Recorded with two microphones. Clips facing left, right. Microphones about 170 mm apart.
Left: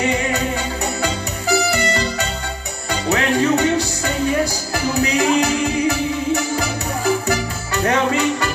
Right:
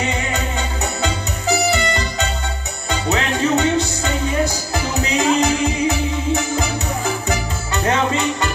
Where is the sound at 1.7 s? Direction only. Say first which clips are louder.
Even; 20° right (ahead or behind).